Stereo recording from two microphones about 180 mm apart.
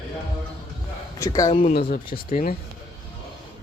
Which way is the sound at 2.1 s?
50° left (ahead or behind).